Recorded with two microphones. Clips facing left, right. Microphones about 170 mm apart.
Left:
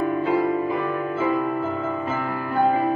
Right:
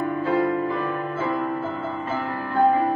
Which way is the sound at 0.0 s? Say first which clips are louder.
Left 1 dB; 20° left (ahead or behind).